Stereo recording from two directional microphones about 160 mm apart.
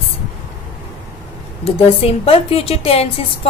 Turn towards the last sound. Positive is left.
turn(degrees=35)  # may be behind; listen again after turning